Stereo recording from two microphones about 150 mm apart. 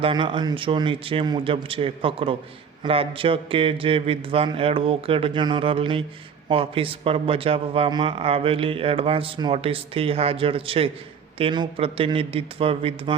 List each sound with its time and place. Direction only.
0.0 s speech: 35° right (ahead or behind)